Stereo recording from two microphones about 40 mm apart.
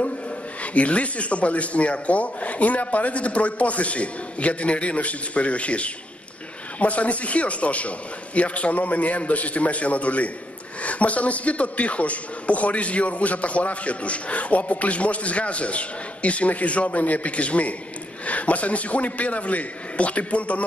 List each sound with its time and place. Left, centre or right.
0.6 s a man's voice: left